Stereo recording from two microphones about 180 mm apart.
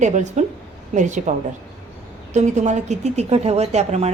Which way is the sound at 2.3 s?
40° right (ahead or behind).